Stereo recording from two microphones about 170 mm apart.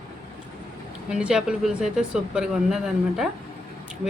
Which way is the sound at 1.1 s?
5° right (ahead or behind).